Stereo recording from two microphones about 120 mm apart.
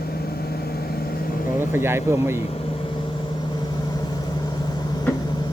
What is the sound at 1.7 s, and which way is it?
Speech, 20° right (ahead or behind).